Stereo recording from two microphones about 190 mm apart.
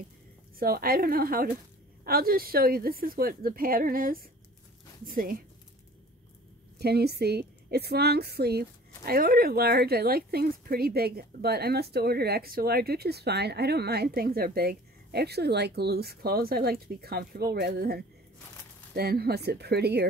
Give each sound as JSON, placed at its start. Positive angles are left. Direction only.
{"t": 0.6, "sound": "a woman's voice", "side_deg": -50}
{"t": 6.8, "sound": "a woman's voice", "side_deg": -60}